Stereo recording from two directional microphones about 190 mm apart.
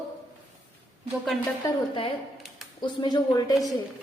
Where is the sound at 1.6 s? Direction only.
25° left (ahead or behind).